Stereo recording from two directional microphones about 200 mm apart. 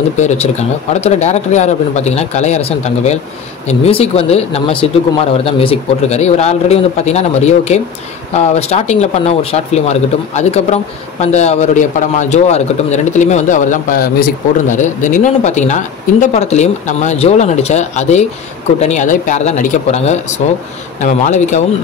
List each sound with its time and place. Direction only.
0.2 s speech: 35° left (ahead or behind)